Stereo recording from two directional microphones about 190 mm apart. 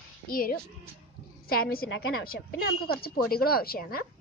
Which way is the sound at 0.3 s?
50° left (ahead or behind).